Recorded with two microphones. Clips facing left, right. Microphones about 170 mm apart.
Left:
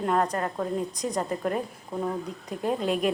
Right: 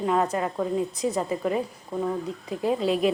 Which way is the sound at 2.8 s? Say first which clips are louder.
Right 3 dB; 50° left (ahead or behind).